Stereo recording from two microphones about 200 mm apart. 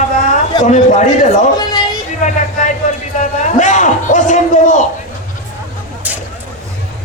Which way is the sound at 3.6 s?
35° left (ahead or behind).